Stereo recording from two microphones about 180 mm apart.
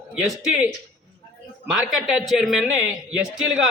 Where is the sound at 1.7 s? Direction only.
Centre (ahead or behind).